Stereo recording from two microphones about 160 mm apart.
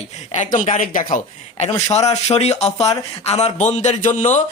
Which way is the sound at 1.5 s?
45° left (ahead or behind).